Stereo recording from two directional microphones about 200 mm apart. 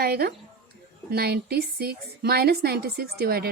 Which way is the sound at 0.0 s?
50° right (ahead or behind).